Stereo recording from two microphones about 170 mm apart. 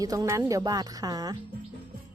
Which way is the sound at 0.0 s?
20° right (ahead or behind).